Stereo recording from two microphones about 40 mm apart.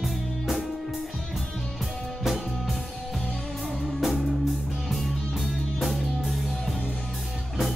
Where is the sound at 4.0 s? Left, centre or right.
Centre.